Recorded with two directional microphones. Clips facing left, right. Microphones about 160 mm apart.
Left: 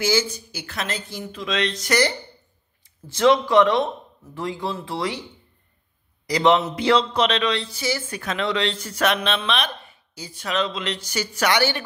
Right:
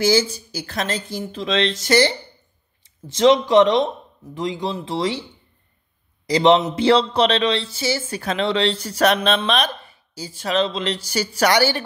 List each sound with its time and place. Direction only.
0.0 s speech: 35° right (ahead or behind)
6.2 s speech: 25° right (ahead or behind)